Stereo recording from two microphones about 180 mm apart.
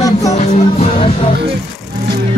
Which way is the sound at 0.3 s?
35° left (ahead or behind).